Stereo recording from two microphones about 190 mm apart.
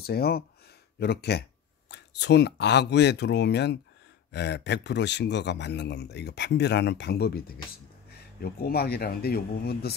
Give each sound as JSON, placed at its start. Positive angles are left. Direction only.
{"t": 0.0, "sound": "a man's voice", "side_deg": 55}